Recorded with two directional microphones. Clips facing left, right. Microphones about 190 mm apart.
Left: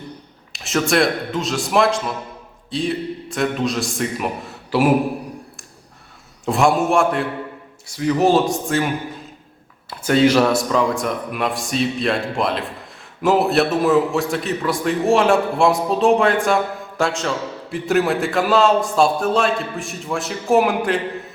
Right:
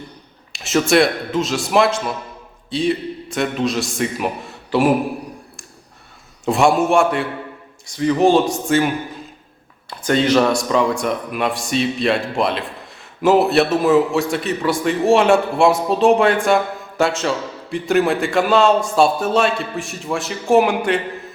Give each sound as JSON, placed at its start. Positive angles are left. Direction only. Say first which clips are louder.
{"t": 0.5, "sound": "a man's voice", "louder": "right 3 dB", "side_deg": 0}
{"t": 6.4, "sound": "a man's voice", "louder": "right 2 dB", "side_deg": 0}
{"t": 10.0, "sound": "a man's voice", "louder": "left 1 dB", "side_deg": 5}